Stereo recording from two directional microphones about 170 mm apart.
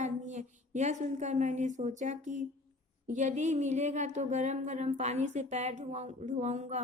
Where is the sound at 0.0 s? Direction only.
45° right (ahead or behind).